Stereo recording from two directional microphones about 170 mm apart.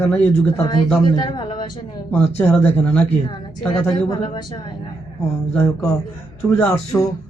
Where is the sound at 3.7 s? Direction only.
30° left (ahead or behind).